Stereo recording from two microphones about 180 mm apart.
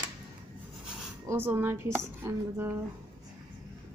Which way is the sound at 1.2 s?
10° right (ahead or behind).